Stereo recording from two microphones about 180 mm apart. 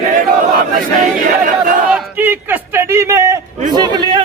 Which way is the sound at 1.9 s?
10° right (ahead or behind).